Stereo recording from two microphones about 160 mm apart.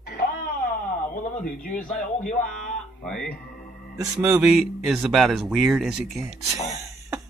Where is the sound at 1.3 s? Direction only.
55° left (ahead or behind).